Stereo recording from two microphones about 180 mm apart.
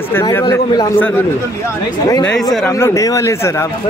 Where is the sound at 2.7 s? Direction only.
15° left (ahead or behind).